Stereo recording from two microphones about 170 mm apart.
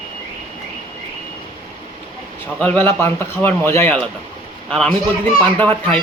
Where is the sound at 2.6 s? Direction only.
10° left (ahead or behind).